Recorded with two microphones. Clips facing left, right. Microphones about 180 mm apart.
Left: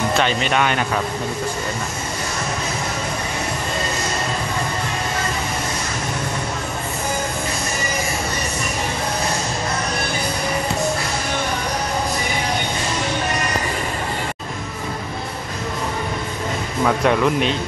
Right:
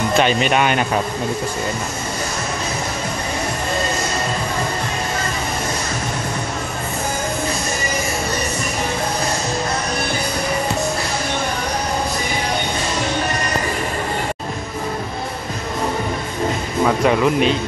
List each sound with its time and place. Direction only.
0.2 s speech: 15° right (ahead or behind)
16.8 s speech: centre (ahead or behind)